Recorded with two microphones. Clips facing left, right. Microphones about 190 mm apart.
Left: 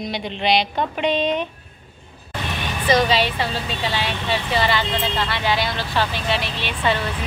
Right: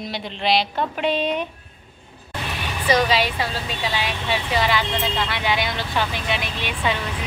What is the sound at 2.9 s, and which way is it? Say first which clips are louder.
Speech: left 1 dB; 10° right (ahead or behind).